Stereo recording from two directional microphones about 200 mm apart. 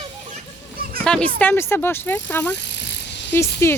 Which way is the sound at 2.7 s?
60° left (ahead or behind).